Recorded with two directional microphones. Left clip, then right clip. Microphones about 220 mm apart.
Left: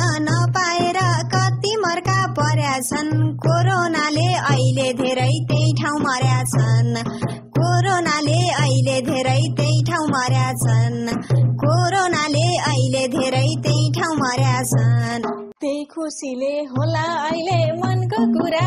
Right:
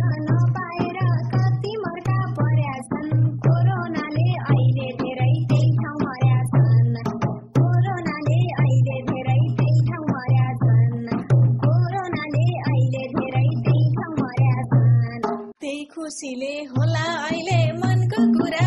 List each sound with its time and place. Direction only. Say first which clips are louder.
3.7 s music: left 8 dB; 45° left (ahead or behind)
16.9 s music: left 3 dB; 20° left (ahead or behind)